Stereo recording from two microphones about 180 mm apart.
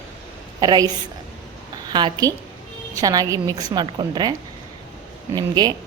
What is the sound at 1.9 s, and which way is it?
A woman's voice, 25° right (ahead or behind).